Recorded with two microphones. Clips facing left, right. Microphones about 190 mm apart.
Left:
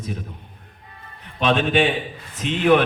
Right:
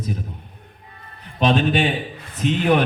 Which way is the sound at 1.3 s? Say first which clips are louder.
Even; 40° right (ahead or behind).